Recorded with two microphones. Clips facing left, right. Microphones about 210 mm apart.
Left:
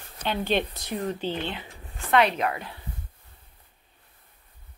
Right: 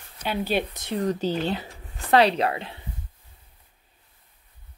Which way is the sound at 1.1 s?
40° right (ahead or behind).